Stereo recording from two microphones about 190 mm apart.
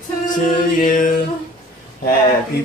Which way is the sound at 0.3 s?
45° left (ahead or behind).